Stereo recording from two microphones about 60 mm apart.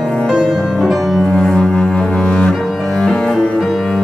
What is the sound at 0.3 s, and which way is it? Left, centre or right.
Music, centre.